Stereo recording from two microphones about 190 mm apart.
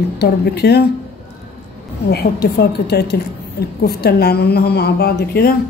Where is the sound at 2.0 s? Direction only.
55° left (ahead or behind).